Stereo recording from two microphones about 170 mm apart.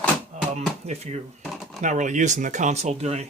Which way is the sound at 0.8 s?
40° right (ahead or behind).